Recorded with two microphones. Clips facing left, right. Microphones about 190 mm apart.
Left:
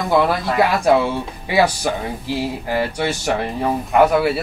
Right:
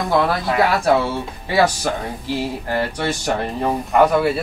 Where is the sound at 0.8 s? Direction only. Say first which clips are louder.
Left 2 dB; 15° left (ahead or behind).